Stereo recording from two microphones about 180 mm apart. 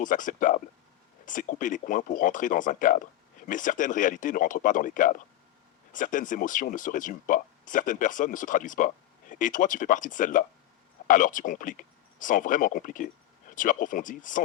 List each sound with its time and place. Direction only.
0.0 s speech: 45° left (ahead or behind)